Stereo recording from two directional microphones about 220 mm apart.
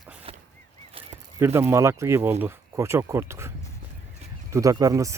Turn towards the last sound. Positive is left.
turn(degrees=-15)  # may be behind; listen again after turning